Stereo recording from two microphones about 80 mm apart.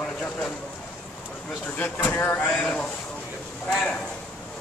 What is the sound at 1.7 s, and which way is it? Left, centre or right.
Speech, left.